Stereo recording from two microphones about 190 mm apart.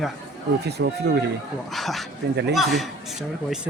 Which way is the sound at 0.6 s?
60° right (ahead or behind).